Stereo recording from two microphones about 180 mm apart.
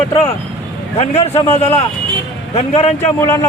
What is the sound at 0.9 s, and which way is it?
A man's voice, 35° left (ahead or behind).